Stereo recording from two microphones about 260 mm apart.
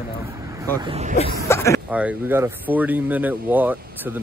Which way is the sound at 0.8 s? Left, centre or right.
Right.